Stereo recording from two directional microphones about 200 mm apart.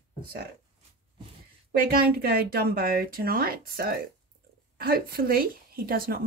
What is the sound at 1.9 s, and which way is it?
Speech, 50° right (ahead or behind).